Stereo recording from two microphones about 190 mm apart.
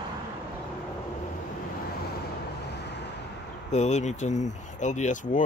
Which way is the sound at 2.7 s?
65° left (ahead or behind).